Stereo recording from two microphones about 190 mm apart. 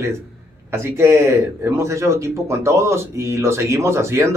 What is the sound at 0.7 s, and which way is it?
A man's voice, 15° right (ahead or behind).